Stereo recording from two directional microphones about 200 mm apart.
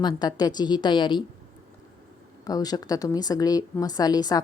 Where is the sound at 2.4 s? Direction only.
20° left (ahead or behind).